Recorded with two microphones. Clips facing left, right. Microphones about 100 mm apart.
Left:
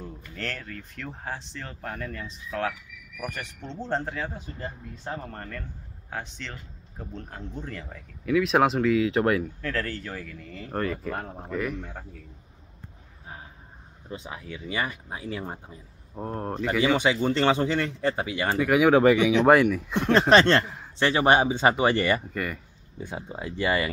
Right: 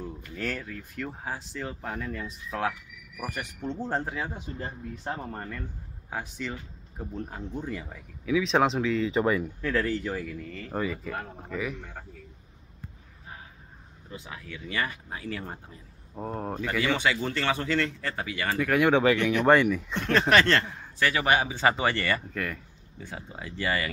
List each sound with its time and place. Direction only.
0.0 s speech: 5° right (ahead or behind)
9.6 s speech: 10° right (ahead or behind)
10.3 s speech: centre (ahead or behind)
14.0 s speech: 20° left (ahead or behind)
16.2 s speech: centre (ahead or behind); by 18.6 s 20° left (ahead or behind)
18.6 s speech: 5° left (ahead or behind)
19.9 s speech: 15° left (ahead or behind)
22.3 s speech: 5° left (ahead or behind)
22.9 s speech: 20° left (ahead or behind)